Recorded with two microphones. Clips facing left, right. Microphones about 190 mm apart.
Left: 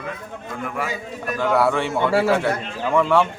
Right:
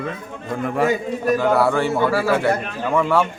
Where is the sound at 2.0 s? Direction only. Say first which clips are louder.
Even; 25° left (ahead or behind).